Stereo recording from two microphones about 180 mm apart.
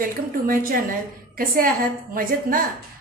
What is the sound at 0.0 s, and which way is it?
A woman's voice, 50° right (ahead or behind).